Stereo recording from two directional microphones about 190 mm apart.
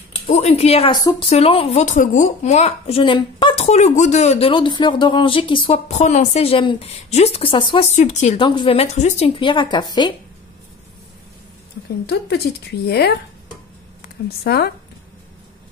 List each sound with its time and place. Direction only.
0.3 s speech: 35° left (ahead or behind)
8.5 s a woman's voice: 25° left (ahead or behind)
12.8 s speech: 60° left (ahead or behind)
14.4 s speech: 55° left (ahead or behind)